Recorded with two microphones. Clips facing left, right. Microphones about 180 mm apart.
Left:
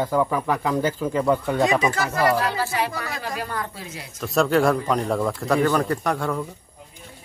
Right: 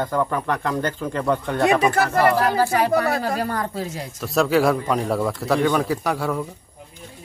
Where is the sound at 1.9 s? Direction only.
60° right (ahead or behind).